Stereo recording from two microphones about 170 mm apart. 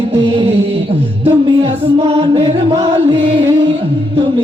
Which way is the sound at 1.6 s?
35° right (ahead or behind).